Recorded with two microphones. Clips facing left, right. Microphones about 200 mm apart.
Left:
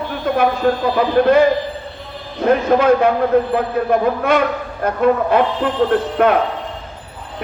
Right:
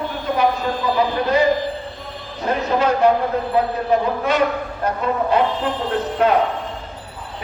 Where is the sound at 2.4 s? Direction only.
55° left (ahead or behind).